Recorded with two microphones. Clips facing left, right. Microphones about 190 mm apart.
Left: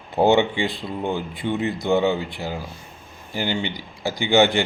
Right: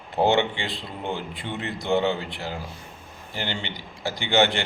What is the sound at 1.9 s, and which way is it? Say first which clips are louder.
Speech: left 2 dB; 10° left (ahead or behind).